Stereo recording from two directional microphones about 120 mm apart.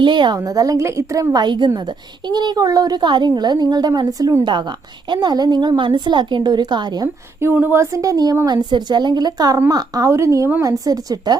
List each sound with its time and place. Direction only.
0.0 s a woman's voice: 40° right (ahead or behind)
7.3 s a woman's voice: 20° right (ahead or behind)